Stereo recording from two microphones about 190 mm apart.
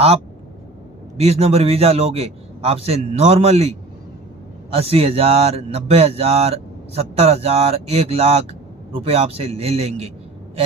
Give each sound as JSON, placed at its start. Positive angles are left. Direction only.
{"t": 1.1, "sound": "a man's voice", "side_deg": -35}